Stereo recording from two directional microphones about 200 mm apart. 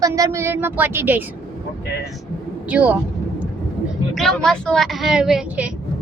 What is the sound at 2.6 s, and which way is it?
Speech, 5° right (ahead or behind).